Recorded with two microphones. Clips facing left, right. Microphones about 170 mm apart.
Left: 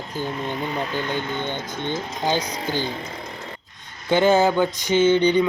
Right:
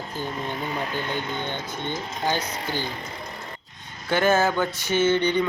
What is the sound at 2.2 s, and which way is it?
Speech, 15° left (ahead or behind).